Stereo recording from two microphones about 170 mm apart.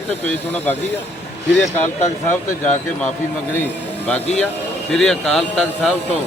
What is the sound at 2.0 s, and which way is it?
Speech, 45° left (ahead or behind).